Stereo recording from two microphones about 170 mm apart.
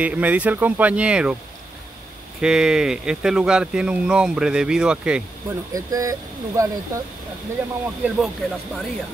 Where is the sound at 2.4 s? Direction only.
5° right (ahead or behind).